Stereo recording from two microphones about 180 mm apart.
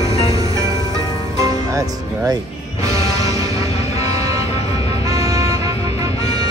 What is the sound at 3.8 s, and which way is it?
Vehicle, 20° right (ahead or behind).